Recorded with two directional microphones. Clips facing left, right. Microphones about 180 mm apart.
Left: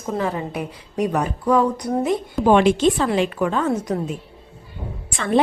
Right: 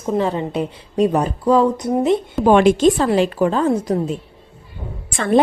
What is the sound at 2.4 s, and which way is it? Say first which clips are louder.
Speech: right 3 dB; 45° right (ahead or behind).